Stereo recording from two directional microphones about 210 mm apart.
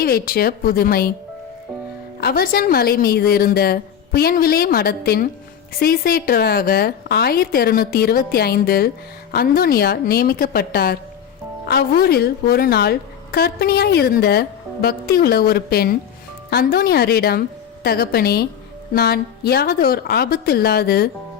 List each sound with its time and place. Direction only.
0.0 s a woman's voice: 45° left (ahead or behind)
2.2 s a woman's voice: 45° left (ahead or behind)